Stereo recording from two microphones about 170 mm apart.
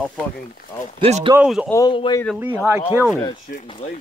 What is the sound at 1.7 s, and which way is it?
Speech, 20° left (ahead or behind).